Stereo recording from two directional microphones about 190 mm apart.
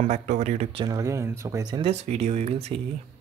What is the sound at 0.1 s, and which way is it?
Speech, 40° right (ahead or behind).